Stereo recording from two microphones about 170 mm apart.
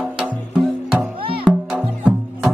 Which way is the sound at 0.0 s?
Centre (ahead or behind).